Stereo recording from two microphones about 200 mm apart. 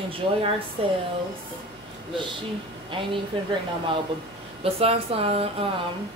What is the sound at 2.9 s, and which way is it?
A woman's voice, 25° right (ahead or behind).